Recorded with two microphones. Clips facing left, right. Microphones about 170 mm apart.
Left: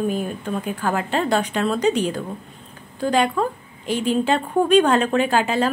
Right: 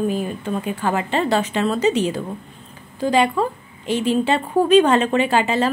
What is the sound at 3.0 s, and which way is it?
A woman's voice, 5° right (ahead or behind).